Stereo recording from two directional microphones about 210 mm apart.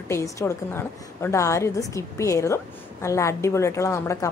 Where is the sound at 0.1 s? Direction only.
15° left (ahead or behind).